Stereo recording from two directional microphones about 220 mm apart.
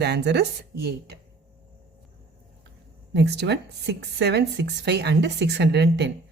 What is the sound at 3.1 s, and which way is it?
Speech, 50° right (ahead or behind).